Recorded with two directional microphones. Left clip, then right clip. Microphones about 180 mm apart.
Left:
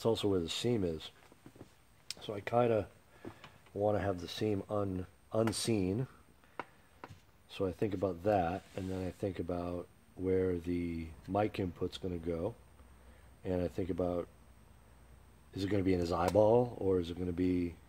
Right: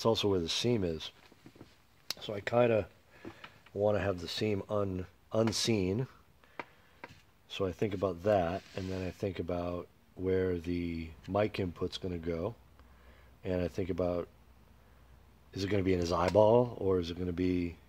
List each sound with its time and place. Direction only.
0.0 s speech: 40° right (ahead or behind)
2.1 s speech: 40° right (ahead or behind)
7.4 s speech: 40° right (ahead or behind)
15.5 s speech: 40° right (ahead or behind)